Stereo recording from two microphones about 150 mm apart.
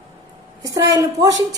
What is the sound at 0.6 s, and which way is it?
Speech, 25° right (ahead or behind).